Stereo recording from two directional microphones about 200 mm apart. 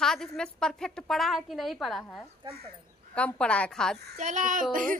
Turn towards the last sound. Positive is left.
turn(degrees=-40)  # may be behind; listen again after turning